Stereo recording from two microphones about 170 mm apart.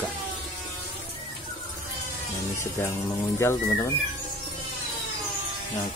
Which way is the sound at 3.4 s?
15° left (ahead or behind).